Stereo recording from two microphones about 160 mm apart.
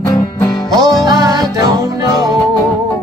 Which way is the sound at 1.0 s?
20° right (ahead or behind).